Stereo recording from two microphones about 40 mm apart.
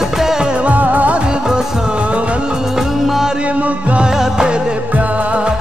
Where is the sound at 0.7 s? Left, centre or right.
Right.